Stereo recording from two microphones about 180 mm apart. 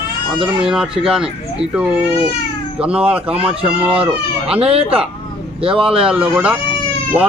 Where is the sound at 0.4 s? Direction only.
5° right (ahead or behind).